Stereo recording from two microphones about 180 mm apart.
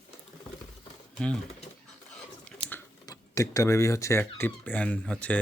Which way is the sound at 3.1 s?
20° left (ahead or behind).